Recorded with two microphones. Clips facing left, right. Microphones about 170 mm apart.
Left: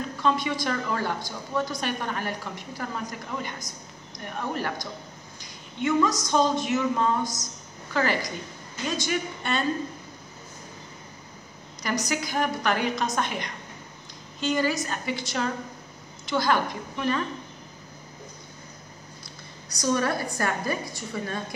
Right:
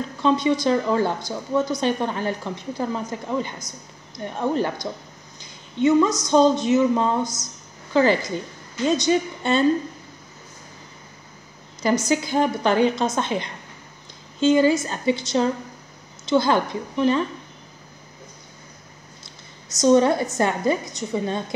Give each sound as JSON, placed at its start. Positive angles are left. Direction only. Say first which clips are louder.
{"t": 0.2, "sound": "a woman's voice", "louder": "right 7 dB", "side_deg": -25}
{"t": 11.8, "sound": "a woman's voice", "louder": "right 8 dB", "side_deg": -25}
{"t": 19.7, "sound": "a woman's voice", "louder": "right 9 dB", "side_deg": -20}